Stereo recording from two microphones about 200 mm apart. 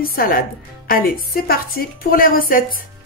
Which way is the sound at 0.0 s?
45° left (ahead or behind).